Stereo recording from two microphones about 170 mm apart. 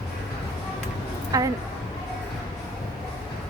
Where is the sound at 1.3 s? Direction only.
20° right (ahead or behind).